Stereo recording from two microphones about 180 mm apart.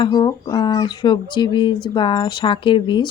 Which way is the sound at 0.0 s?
25° left (ahead or behind).